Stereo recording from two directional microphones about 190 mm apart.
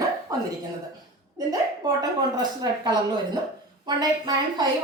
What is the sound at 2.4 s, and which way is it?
Speech, 20° right (ahead or behind).